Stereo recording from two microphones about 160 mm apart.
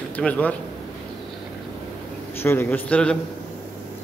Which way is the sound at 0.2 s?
10° left (ahead or behind).